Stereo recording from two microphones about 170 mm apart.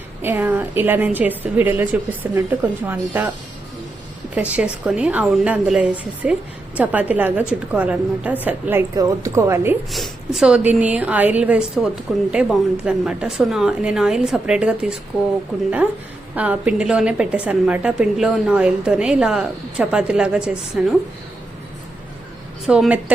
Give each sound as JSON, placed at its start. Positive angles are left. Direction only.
{"t": 0.2, "sound": "a woman's voice", "side_deg": -10}
{"t": 4.4, "sound": "a woman's voice", "side_deg": -10}
{"t": 9.9, "sound": "a woman's voice", "side_deg": 0}
{"t": 16.3, "sound": "a woman's voice", "side_deg": -10}
{"t": 22.6, "sound": "a woman's voice", "side_deg": -5}